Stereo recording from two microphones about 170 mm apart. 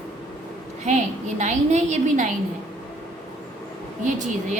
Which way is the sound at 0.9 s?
45° right (ahead or behind).